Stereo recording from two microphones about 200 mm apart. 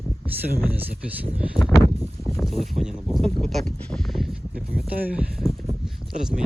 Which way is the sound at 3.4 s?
Centre (ahead or behind).